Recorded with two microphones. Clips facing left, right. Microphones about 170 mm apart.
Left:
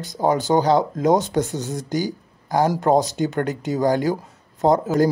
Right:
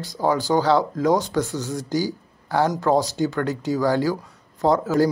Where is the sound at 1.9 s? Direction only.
20° left (ahead or behind).